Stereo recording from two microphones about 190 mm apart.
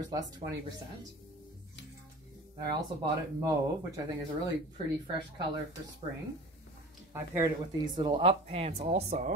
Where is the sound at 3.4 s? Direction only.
20° right (ahead or behind).